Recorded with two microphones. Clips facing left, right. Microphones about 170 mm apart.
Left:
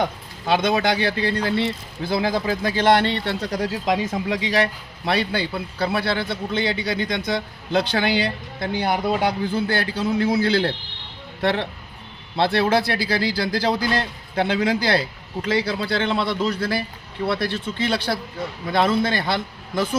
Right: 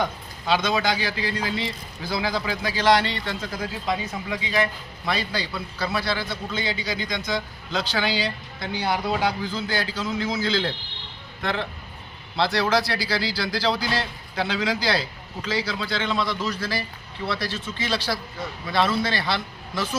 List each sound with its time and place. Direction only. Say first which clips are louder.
0.4 s a man's voice: left 3 dB; 55° left (ahead or behind)
3.4 s speech: left 6 dB; 40° left (ahead or behind)
3.7 s speech: left 4 dB; 90° left
4.3 s a man's voice: left 2 dB; 75° left (ahead or behind)
12.4 s a man's voice: left 3 dB; 55° left (ahead or behind)